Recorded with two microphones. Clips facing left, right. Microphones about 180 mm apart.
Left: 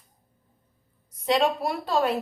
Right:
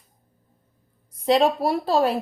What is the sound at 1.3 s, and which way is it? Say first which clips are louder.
Speech: right 4 dB; 35° right (ahead or behind).